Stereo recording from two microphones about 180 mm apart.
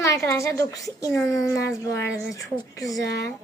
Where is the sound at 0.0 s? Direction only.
15° left (ahead or behind).